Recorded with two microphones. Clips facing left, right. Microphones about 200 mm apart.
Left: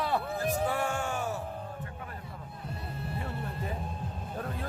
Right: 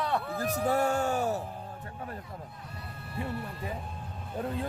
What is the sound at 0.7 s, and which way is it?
Music, 40° right (ahead or behind).